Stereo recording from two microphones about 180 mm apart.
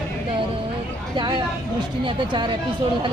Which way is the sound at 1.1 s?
25° right (ahead or behind).